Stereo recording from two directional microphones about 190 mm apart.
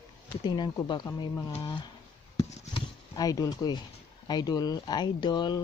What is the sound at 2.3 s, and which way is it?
Chop, 20° left (ahead or behind).